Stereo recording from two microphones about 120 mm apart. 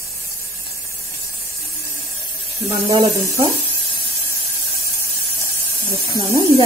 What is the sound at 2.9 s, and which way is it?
Speech, 40° right (ahead or behind).